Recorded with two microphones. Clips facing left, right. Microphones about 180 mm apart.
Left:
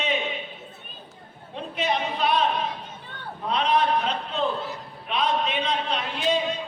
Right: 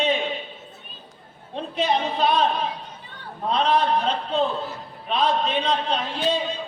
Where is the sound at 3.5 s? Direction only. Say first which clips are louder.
Right 2 dB; 35° right (ahead or behind).